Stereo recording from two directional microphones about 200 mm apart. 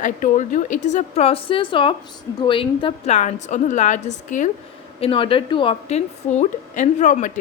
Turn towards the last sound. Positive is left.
turn(degrees=40)  # may be behind; listen again after turning